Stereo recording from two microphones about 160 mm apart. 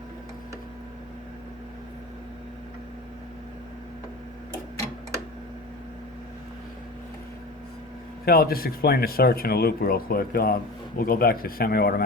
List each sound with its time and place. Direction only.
8.2 s speech: 70° left (ahead or behind)